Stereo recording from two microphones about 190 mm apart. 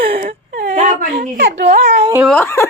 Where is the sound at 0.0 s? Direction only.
55° right (ahead or behind).